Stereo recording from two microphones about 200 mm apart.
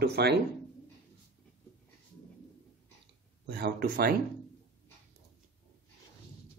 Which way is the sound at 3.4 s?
50° right (ahead or behind).